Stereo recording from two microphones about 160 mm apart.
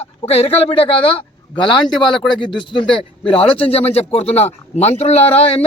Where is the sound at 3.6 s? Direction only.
40° left (ahead or behind).